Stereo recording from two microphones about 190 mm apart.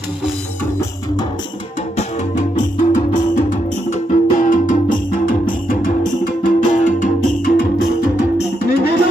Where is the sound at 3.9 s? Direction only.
40° left (ahead or behind).